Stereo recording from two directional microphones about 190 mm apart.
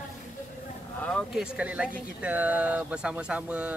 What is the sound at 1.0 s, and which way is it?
Speech, 5° left (ahead or behind).